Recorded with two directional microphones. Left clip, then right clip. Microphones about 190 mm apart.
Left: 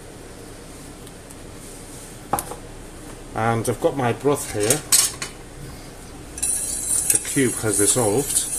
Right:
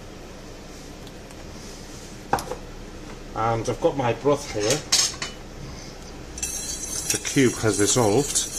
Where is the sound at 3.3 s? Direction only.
45° left (ahead or behind).